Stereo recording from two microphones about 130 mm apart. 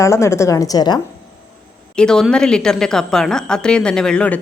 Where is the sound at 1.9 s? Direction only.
5° left (ahead or behind).